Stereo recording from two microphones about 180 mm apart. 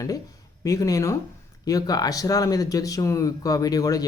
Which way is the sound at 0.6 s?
20° left (ahead or behind).